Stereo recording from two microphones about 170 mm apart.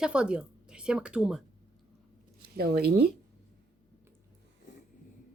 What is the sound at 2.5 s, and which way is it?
Speech, 65° right (ahead or behind).